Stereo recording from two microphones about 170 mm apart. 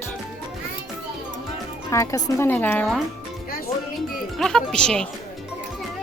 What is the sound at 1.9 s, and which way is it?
Speech, 20° left (ahead or behind).